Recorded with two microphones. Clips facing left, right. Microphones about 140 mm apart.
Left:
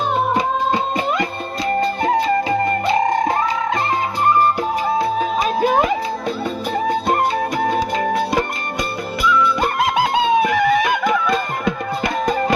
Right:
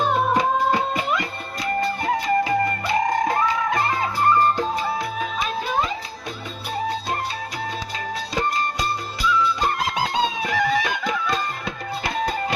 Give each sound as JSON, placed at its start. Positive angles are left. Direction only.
{"t": 1.8, "sound": "music", "side_deg": 25}
{"t": 6.8, "sound": "music", "side_deg": 55}
{"t": 12.0, "sound": "music", "side_deg": 50}